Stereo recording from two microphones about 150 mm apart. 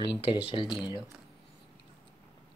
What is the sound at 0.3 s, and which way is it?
Speech, 35° left (ahead or behind).